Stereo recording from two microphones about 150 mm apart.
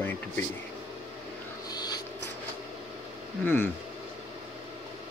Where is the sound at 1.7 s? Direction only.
25° left (ahead or behind).